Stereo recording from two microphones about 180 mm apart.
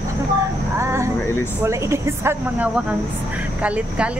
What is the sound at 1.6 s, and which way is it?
Speech, 15° right (ahead or behind).